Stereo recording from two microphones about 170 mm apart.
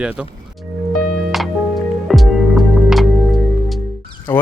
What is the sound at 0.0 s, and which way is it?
Speech, 5° right (ahead or behind).